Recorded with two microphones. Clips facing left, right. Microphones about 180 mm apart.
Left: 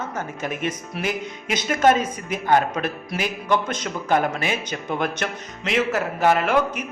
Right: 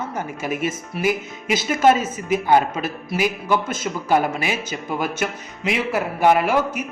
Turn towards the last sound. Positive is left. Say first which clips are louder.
# right 1 dB
turn(degrees=-10)  # may be behind; listen again after turning